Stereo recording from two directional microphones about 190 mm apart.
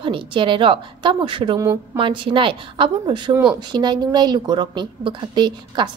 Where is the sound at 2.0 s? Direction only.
25° right (ahead or behind).